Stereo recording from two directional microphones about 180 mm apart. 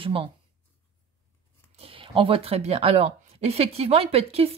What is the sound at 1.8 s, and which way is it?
Speech, 30° right (ahead or behind).